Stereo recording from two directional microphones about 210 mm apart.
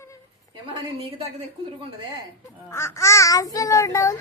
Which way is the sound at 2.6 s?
10° left (ahead or behind).